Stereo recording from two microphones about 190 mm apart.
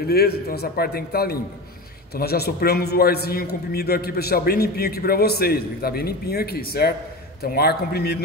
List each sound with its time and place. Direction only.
0.0 s a man's voice: 55° left (ahead or behind)